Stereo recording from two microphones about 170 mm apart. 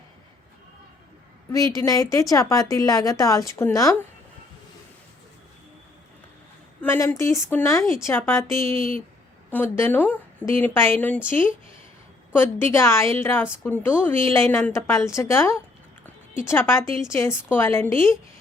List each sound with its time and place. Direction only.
1.7 s speech: 20° left (ahead or behind)
6.8 s a woman's voice: 15° left (ahead or behind)